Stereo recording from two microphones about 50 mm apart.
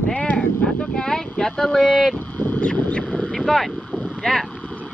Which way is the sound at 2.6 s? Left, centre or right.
Left.